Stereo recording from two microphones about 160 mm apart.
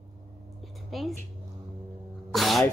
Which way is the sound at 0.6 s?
Centre (ahead or behind).